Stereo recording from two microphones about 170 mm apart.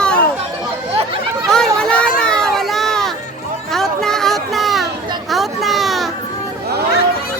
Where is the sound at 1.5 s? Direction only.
5° left (ahead or behind).